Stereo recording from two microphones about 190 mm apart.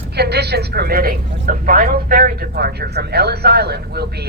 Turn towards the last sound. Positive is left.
turn(degrees=-60)  # may be behind; listen again after turning